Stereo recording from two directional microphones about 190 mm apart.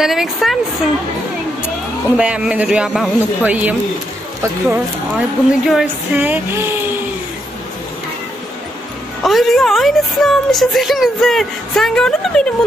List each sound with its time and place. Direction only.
0.0 s a woman's voice: centre (ahead or behind)
2.1 s a woman's voice: 5° right (ahead or behind)
4.4 s a sound: 10° right (ahead or behind)
9.2 s a woman's voice: centre (ahead or behind)